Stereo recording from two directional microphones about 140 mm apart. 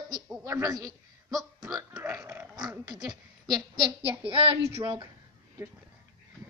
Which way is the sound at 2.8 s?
30° right (ahead or behind).